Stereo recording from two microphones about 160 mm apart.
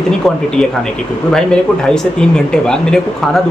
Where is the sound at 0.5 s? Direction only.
5° left (ahead or behind).